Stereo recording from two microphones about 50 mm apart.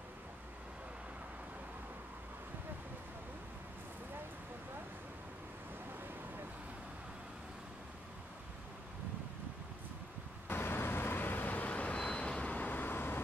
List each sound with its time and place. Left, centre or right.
10.5 s vehicle: left